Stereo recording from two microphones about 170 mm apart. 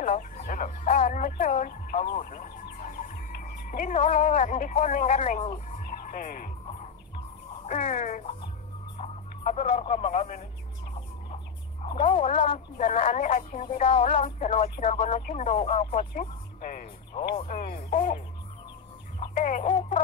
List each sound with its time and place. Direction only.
0.0 s music: 50° left (ahead or behind)
3.6 s speech: 50° left (ahead or behind)
5.7 s music: 50° left (ahead or behind)
7.6 s speech: 45° left (ahead or behind)
11.8 s speech: 35° left (ahead or behind)
14.4 s speech: 45° left (ahead or behind)
14.8 s speech: 35° left (ahead or behind)
15.0 s speech: 45° left (ahead or behind)
16.1 s music: 50° left (ahead or behind)
17.1 s speech: 30° left (ahead or behind)
17.5 s speech: 55° left (ahead or behind)
17.8 s music: 45° left (ahead or behind)
19.3 s chicken: 50° left (ahead or behind)